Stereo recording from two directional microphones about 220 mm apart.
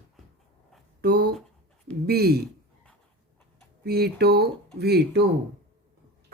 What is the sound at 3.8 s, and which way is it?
Speech, 45° right (ahead or behind).